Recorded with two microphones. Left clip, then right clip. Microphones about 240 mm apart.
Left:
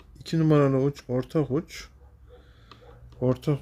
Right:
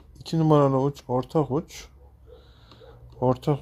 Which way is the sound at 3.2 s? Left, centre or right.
Centre.